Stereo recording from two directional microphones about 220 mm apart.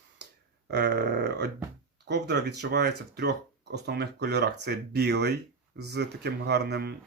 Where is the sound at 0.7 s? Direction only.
50° right (ahead or behind).